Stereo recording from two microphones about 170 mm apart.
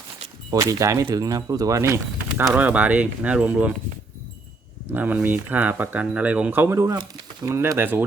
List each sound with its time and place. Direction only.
0.5 s speech: 20° right (ahead or behind)
4.9 s speech: 10° right (ahead or behind)